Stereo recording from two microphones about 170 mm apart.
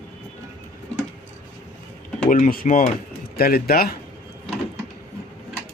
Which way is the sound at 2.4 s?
55° left (ahead or behind).